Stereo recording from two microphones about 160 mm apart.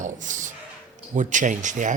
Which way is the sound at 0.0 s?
50° right (ahead or behind).